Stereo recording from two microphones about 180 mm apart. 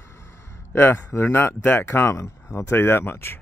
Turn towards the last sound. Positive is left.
turn(degrees=10)  # may be behind; listen again after turning